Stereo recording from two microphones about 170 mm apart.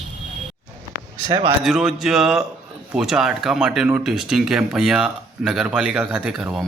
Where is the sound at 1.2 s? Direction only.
30° right (ahead or behind).